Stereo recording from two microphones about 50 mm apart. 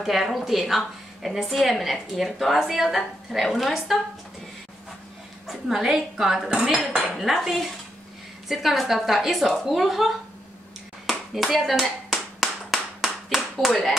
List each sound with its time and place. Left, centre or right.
0.0 s a woman's voice: centre
5.5 s a woman's voice: centre
11.1 s clapping: centre